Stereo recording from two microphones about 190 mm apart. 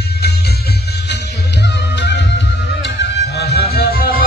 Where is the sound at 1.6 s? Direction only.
65° left (ahead or behind).